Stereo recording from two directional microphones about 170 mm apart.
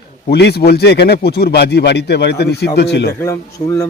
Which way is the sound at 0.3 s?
75° left (ahead or behind).